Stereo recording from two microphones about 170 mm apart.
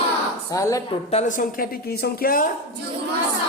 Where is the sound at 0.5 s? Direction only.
20° left (ahead or behind).